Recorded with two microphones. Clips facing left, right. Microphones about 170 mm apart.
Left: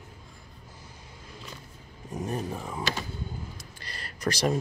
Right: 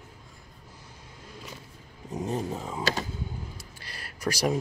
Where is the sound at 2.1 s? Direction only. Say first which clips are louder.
Right 2 dB; 20° right (ahead or behind).